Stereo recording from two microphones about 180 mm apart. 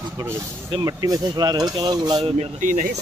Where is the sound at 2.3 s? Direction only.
45° right (ahead or behind).